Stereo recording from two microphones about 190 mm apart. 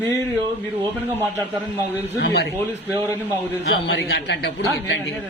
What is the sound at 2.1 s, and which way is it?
Speech, 60° left (ahead or behind).